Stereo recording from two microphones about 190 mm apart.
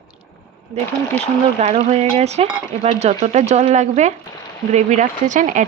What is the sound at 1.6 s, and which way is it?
Speech, 35° right (ahead or behind).